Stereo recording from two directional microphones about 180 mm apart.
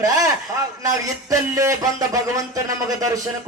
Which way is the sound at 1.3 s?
20° right (ahead or behind).